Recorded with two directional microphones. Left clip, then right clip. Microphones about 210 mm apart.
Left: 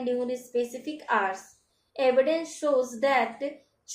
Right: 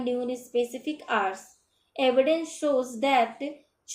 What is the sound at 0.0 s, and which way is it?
A woman's voice, 30° right (ahead or behind).